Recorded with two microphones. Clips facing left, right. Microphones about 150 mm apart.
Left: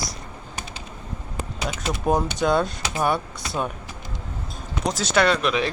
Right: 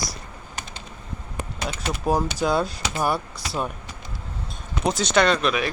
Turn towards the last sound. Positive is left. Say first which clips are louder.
# even
turn(degrees=10)  # may be behind; listen again after turning